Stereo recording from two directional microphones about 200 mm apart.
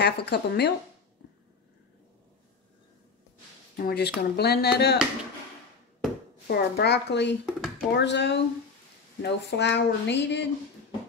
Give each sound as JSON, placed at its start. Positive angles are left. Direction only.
{"t": 0.0, "sound": "speech", "side_deg": 55}
{"t": 3.7, "sound": "speech", "side_deg": 50}
{"t": 6.4, "sound": "speech", "side_deg": 55}
{"t": 7.4, "sound": "speech", "side_deg": -5}
{"t": 7.9, "sound": "speech", "side_deg": 60}